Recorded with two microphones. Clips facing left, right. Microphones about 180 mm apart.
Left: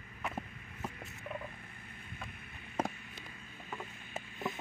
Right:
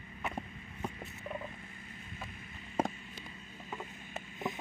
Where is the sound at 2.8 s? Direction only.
10° right (ahead or behind).